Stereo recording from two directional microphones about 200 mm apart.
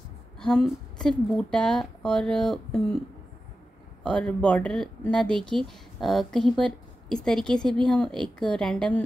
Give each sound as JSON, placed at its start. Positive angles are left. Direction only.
{"t": 0.4, "sound": "a woman's voice", "side_deg": 0}
{"t": 4.0, "sound": "a woman's voice", "side_deg": 5}